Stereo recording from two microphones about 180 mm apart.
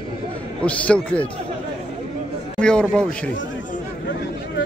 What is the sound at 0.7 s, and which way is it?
Speech, 5° left (ahead or behind).